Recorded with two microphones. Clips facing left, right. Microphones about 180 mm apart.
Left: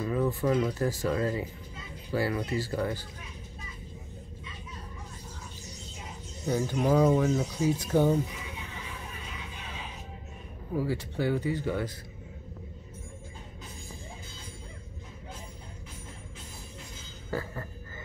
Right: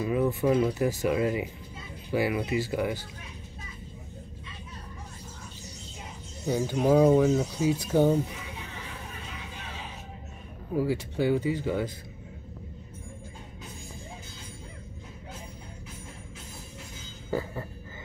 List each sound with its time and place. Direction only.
0.0 s speech: 15° right (ahead or behind)
6.4 s speech: 10° right (ahead or behind)
10.8 s speech: 15° right (ahead or behind)
17.3 s a sound: 15° right (ahead or behind)